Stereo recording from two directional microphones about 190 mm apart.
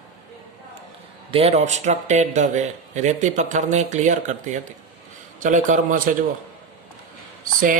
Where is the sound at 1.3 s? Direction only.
30° right (ahead or behind).